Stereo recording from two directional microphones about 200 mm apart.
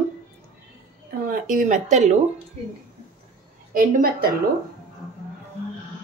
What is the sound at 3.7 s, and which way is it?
Speech, 45° right (ahead or behind).